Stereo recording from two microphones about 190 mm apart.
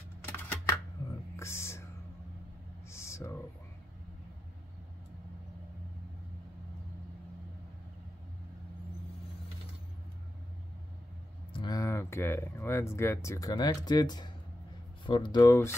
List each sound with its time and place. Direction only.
0.2 s typing: 10° left (ahead or behind)
1.3 s music: 15° left (ahead or behind)
2.9 s a sound: 15° left (ahead or behind)
11.5 s speech: 20° left (ahead or behind)